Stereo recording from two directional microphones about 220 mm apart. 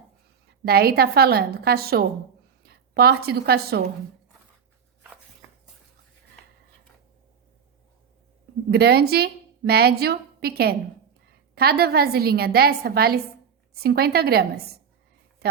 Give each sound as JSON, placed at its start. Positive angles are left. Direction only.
{"t": 0.6, "sound": "a woman's voice", "side_deg": -45}
{"t": 8.7, "sound": "a woman's voice", "side_deg": -45}